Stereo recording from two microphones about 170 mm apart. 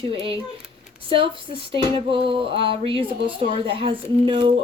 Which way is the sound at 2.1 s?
30° right (ahead or behind).